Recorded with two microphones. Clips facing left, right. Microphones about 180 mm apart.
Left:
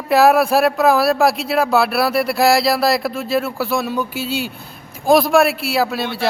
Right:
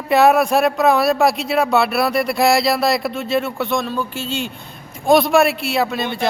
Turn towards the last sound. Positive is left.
turn(degrees=5)  # may be behind; listen again after turning